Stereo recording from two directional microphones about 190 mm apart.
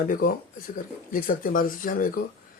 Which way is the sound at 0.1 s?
45° left (ahead or behind).